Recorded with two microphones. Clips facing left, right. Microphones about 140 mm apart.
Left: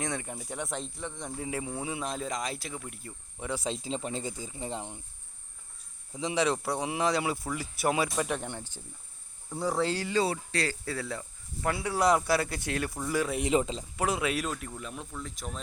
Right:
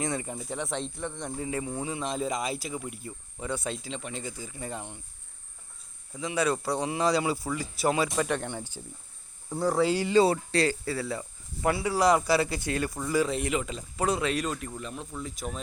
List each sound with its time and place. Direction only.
0.0 s speech: 5° right (ahead or behind)
3.4 s speech: 10° left (ahead or behind)
3.7 s speech: 35° left (ahead or behind)
4.3 s speech: 20° left (ahead or behind)
6.1 s speech: 20° left (ahead or behind); by 10.1 s 10° right (ahead or behind)
10.1 s speech: 30° right (ahead or behind)
10.8 s speech: 5° right (ahead or behind)
13.5 s speech: 30° left (ahead or behind)
13.9 s speech: 5° left (ahead or behind)